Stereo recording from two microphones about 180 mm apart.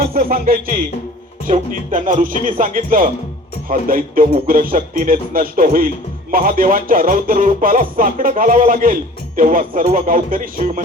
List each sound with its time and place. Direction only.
0.0 s speech: 55° right (ahead or behind)